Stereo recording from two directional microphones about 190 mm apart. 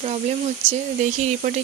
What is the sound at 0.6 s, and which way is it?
Speech, 40° right (ahead or behind).